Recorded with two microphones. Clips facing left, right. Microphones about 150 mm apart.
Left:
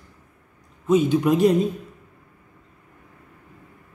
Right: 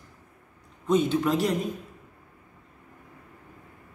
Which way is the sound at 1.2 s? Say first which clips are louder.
Left 7 dB; 20° left (ahead or behind).